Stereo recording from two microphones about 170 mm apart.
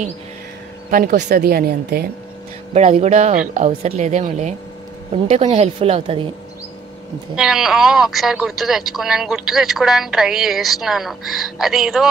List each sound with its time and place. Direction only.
0.8 s speech: 55° right (ahead or behind)
2.7 s a woman's voice: 40° right (ahead or behind)
7.3 s speech: 5° right (ahead or behind)